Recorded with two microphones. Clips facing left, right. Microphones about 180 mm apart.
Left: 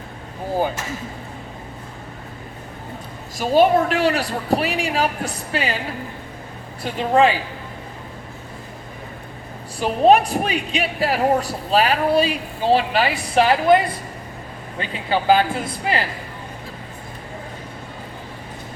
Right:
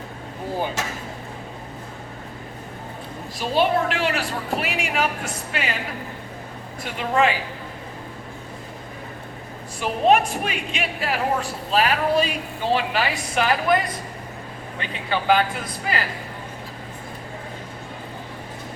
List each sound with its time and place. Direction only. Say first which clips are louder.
3.3 s a woman's voice: left 5 dB; 45° left (ahead or behind)
6.8 s a woman's voice: left 5 dB; 35° left (ahead or behind)
9.8 s a woman's voice: left 4 dB; 35° left (ahead or behind)
14.8 s a woman's voice: left 4 dB; 30° left (ahead or behind)